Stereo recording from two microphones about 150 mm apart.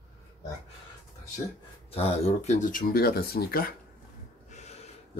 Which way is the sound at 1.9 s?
40° left (ahead or behind).